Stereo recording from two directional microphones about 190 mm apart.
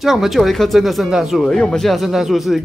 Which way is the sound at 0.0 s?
Centre (ahead or behind).